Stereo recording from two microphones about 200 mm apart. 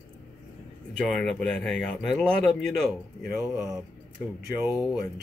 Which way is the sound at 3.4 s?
15° right (ahead or behind).